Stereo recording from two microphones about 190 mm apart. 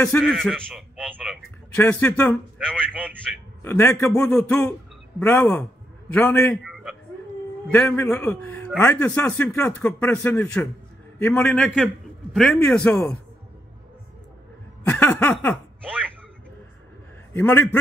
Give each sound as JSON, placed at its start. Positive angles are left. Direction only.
{"t": 0.0, "sound": "a sound", "side_deg": 5}
{"t": 1.8, "sound": "a man's voice", "side_deg": 10}
{"t": 3.6, "sound": "a man's voice", "side_deg": 15}
{"t": 6.6, "sound": "a sound", "side_deg": 0}
{"t": 7.6, "sound": "a man's voice", "side_deg": 5}
{"t": 14.9, "sound": "a man's voice", "side_deg": 10}
{"t": 17.3, "sound": "a man's voice", "side_deg": 10}